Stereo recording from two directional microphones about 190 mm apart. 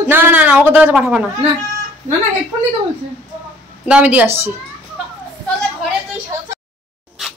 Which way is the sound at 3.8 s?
5° right (ahead or behind).